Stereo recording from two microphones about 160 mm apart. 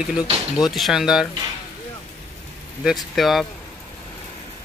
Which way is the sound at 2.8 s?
Centre (ahead or behind).